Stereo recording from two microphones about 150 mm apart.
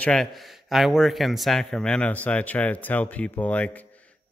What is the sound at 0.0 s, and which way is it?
Speech, 5° left (ahead or behind).